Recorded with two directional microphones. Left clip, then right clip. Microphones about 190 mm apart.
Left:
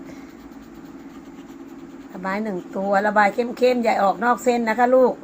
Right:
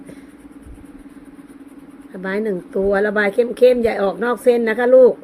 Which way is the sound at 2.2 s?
60° right (ahead or behind).